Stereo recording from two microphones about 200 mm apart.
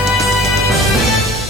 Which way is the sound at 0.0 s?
Centre (ahead or behind).